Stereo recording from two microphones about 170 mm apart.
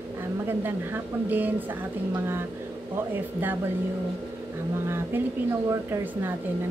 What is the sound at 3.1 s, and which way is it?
Speech, 10° right (ahead or behind).